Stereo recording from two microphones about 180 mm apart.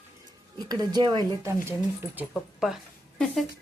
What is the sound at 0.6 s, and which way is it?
A woman's voice, 20° right (ahead or behind).